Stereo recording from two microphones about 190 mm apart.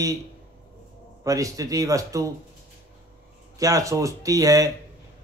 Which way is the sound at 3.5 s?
15° right (ahead or behind).